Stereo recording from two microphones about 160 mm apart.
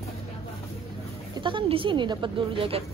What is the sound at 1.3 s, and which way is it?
Speech, 30° right (ahead or behind).